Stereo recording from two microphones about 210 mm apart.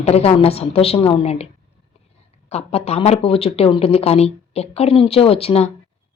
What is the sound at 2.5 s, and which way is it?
Speech, 30° left (ahead or behind).